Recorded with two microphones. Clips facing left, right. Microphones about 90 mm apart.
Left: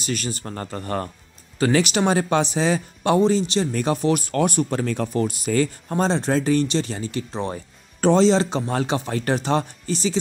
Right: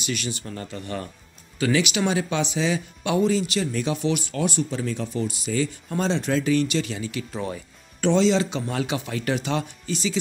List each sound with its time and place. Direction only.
0.0 s speech: 40° left (ahead or behind)
3.7 s speech: 45° left (ahead or behind)
5.9 s speech: 40° left (ahead or behind)